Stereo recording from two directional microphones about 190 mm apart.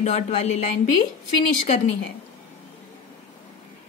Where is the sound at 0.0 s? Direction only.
35° left (ahead or behind).